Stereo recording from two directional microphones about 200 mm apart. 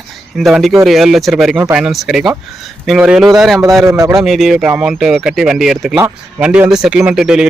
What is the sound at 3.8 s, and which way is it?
Speech, 15° right (ahead or behind).